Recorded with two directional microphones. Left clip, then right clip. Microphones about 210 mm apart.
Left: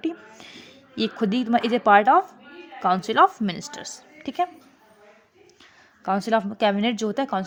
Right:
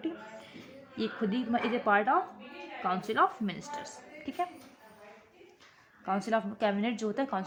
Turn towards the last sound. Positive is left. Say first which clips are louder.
# left 7 dB
turn(degrees=35)  # may be behind; listen again after turning